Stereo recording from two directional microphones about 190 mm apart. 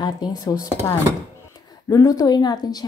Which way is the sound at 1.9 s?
15° left (ahead or behind).